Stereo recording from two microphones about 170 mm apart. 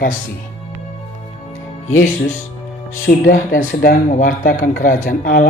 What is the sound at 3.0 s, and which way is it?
Speech, 55° left (ahead or behind).